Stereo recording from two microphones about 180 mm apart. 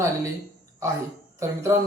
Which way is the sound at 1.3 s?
15° right (ahead or behind).